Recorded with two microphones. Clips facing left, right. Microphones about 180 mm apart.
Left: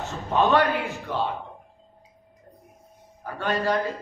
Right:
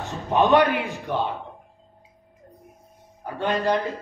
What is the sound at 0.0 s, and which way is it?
A man's voice, 15° right (ahead or behind).